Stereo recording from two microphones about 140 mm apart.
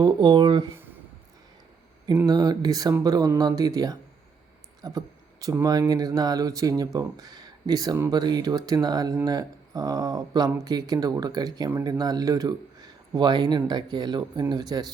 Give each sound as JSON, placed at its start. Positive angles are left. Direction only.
{"t": 0.0, "sound": "speech", "side_deg": -30}
{"t": 2.2, "sound": "a man's voice", "side_deg": -30}